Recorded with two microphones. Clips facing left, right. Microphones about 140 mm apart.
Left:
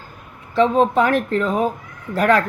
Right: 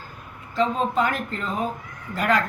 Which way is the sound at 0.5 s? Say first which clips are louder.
Left 7 dB; 65° left (ahead or behind).